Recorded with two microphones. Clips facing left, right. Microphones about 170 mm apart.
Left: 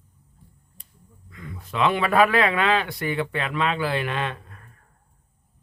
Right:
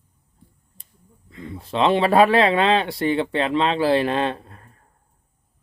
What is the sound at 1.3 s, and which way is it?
Speech, 30° right (ahead or behind).